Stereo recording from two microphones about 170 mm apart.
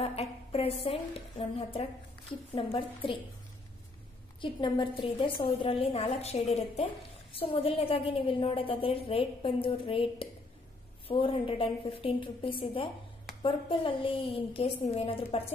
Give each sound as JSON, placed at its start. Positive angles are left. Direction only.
{"t": 0.0, "sound": "a woman's voice", "side_deg": 35}
{"t": 2.5, "sound": "a woman's voice", "side_deg": 30}
{"t": 4.4, "sound": "a woman's voice", "side_deg": 30}